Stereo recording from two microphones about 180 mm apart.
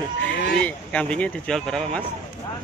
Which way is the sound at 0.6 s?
5° left (ahead or behind).